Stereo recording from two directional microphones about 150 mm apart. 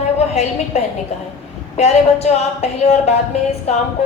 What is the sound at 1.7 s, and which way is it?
A woman's voice, 45° left (ahead or behind).